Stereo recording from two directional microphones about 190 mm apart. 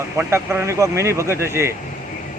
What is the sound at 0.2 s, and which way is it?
Speech, 15° right (ahead or behind).